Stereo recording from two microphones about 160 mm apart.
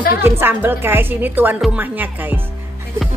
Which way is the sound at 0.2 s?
15° right (ahead or behind).